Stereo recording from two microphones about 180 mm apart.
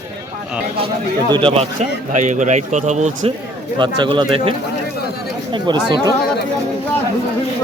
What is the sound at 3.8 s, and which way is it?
Speech, 25° right (ahead or behind).